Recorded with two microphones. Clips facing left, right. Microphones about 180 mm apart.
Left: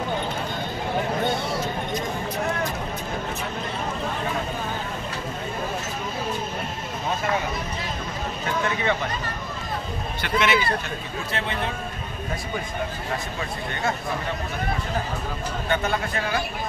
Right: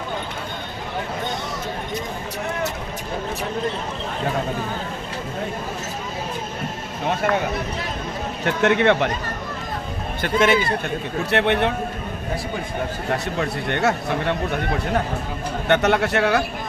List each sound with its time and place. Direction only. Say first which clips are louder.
8.5 s speech: right 8 dB; 70° right (ahead or behind)
10.2 s speech: right 5 dB; 50° right (ahead or behind)
11.2 s speech: right 10 dB; 70° right (ahead or behind)
13.1 s speech: right 6 dB; 65° right (ahead or behind)